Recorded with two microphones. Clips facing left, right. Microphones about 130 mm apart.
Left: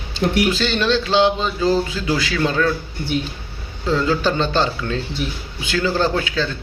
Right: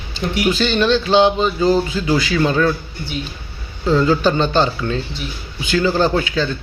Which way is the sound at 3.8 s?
Centre (ahead or behind).